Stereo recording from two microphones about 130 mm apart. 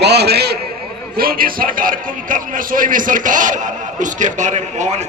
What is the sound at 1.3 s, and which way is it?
A man's voice, 90° right.